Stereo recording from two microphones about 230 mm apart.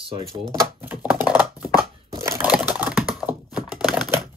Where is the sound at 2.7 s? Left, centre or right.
Centre.